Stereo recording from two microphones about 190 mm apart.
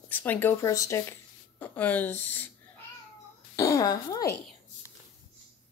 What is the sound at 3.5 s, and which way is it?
Speech, 15° left (ahead or behind).